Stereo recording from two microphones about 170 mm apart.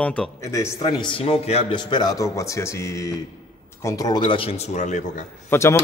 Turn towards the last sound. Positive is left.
turn(degrees=15)  # may be behind; listen again after turning